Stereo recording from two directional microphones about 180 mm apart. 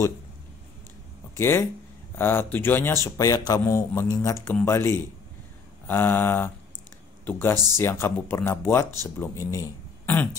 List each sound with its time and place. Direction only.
1.3 s speech: 15° left (ahead or behind)